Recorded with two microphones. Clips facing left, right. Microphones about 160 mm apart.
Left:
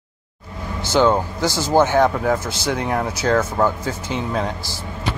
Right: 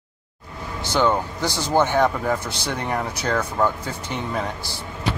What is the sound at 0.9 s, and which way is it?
Speech, 15° left (ahead or behind).